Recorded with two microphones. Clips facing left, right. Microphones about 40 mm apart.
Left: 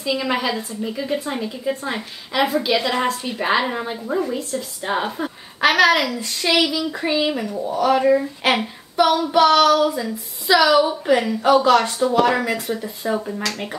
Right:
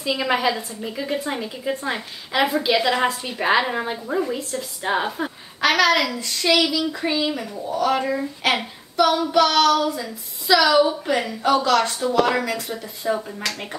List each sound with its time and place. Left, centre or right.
0.0 s a woman's voice: centre
5.6 s a woman's voice: centre
6.7 s a sound: centre
7.1 s a woman's voice: centre
9.0 s a sound: left
9.3 s a woman's voice: centre